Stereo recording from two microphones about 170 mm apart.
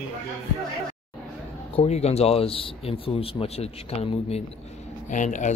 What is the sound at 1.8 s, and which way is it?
Speech, 40° left (ahead or behind).